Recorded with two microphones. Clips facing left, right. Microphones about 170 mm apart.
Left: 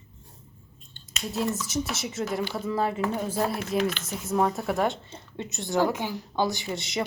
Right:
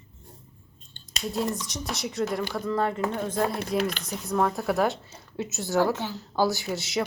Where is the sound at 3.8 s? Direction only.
35° right (ahead or behind).